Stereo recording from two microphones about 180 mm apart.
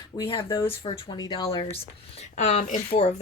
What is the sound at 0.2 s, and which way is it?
Speech, 30° left (ahead or behind).